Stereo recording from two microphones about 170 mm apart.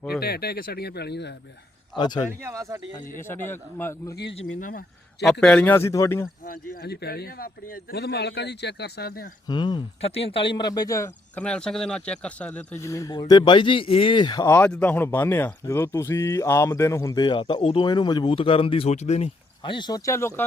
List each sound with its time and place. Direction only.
0.2 s speech: 65° left (ahead or behind); by 1.4 s 80° left
2.0 s speech: 25° left (ahead or behind)
2.4 s speech: 20° right (ahead or behind)
3.2 s speech: 15° left (ahead or behind)
4.1 s speech: 80° left
4.6 s speech: 55° left (ahead or behind)
5.2 s speech: 5° left (ahead or behind)
6.4 s speech: 55° left (ahead or behind)
9.5 s speech: 25° left (ahead or behind)
11.3 s speech: 5° left (ahead or behind)